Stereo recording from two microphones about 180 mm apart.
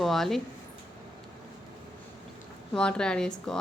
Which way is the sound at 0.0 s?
Centre (ahead or behind).